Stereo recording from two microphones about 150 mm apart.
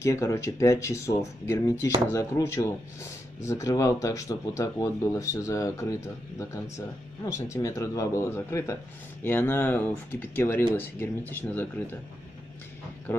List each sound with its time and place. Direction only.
0.0 s speech: 20° left (ahead or behind)